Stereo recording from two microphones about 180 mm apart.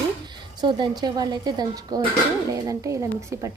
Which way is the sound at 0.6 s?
25° right (ahead or behind).